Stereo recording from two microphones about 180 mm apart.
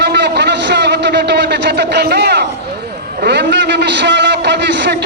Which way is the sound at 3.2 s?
70° right (ahead or behind).